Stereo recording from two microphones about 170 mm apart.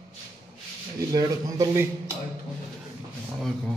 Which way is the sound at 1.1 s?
20° right (ahead or behind).